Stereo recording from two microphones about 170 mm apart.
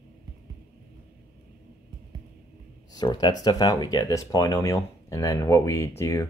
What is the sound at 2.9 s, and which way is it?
Speech, 25° left (ahead or behind).